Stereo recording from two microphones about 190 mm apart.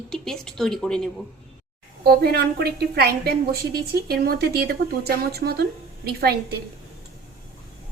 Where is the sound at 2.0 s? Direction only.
55° right (ahead or behind).